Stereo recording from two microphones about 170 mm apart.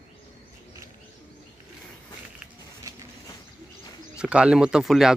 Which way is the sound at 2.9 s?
20° right (ahead or behind).